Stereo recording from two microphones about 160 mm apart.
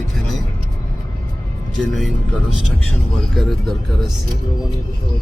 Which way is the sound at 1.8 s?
Centre (ahead or behind).